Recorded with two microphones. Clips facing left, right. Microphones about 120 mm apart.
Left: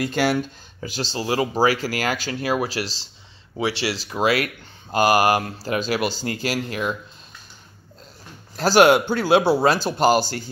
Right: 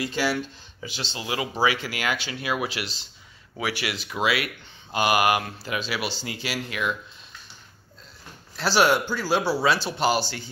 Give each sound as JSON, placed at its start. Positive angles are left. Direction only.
{"t": 0.0, "sound": "speech", "side_deg": 55}
{"t": 8.5, "sound": "speech", "side_deg": 50}